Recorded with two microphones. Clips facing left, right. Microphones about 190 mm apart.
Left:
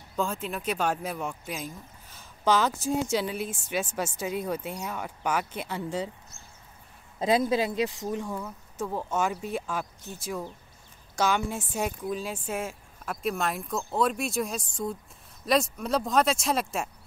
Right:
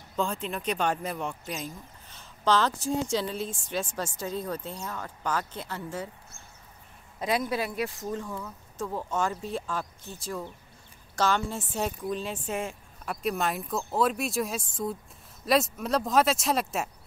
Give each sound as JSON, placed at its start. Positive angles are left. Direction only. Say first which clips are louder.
{"t": 0.1, "sound": "speech", "louder": "even", "side_deg": 5}
{"t": 7.2, "sound": "a man's voice", "louder": "left 4 dB", "side_deg": 25}
{"t": 11.1, "sound": "speech", "louder": "even", "side_deg": 15}